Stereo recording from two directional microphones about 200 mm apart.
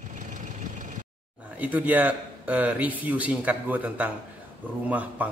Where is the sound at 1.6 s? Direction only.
10° right (ahead or behind).